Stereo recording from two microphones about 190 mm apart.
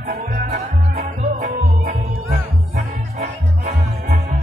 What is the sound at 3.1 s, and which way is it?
Music, 35° right (ahead or behind).